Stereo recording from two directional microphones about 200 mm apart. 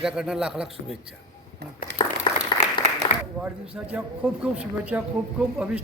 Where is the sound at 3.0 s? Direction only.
25° left (ahead or behind).